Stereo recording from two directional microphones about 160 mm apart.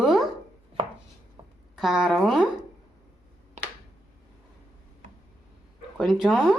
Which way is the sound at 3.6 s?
50° right (ahead or behind).